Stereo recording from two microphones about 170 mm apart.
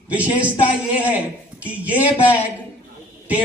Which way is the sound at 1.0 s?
10° right (ahead or behind).